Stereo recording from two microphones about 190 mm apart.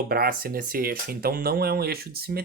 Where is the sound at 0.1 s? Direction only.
50° right (ahead or behind).